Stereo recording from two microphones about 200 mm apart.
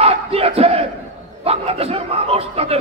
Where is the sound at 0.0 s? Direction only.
30° right (ahead or behind).